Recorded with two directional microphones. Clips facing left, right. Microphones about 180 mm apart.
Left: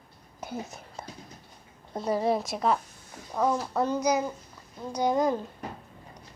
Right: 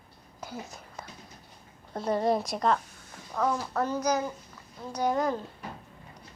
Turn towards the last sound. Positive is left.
turn(degrees=15)  # may be behind; listen again after turning